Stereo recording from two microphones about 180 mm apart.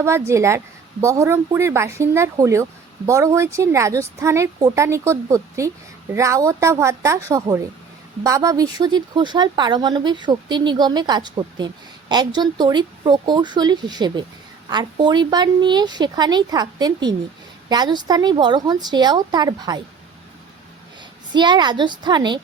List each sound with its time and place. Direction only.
0.0 s speech: 15° right (ahead or behind)
21.3 s speech: 25° right (ahead or behind)